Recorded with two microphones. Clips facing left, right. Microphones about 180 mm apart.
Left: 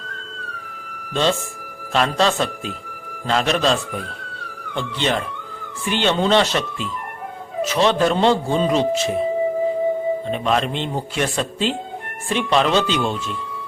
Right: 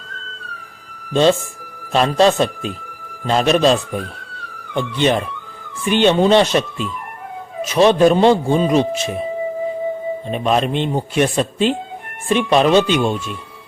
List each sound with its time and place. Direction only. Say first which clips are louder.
1.1 s speech: right 6 dB; 15° right (ahead or behind)
10.2 s speech: right 3 dB; 15° right (ahead or behind)